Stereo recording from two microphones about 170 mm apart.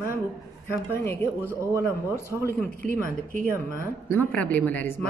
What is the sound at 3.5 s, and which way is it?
Speech, 15° right (ahead or behind).